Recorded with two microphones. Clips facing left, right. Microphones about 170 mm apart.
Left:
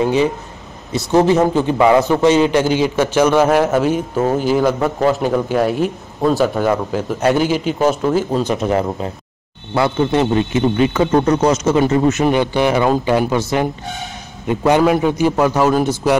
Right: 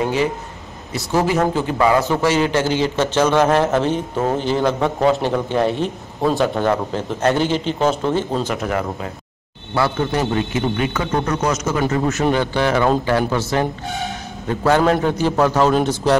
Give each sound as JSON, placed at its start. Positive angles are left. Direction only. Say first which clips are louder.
{"t": 0.9, "sound": "a man's voice", "louder": "left 5 dB", "side_deg": 20}
{"t": 8.5, "sound": "a man's voice", "louder": "left 5 dB", "side_deg": 25}
{"t": 13.8, "sound": "speech", "louder": "right 3 dB", "side_deg": 0}
{"t": 14.5, "sound": "a man's voice", "louder": "left 2 dB", "side_deg": 15}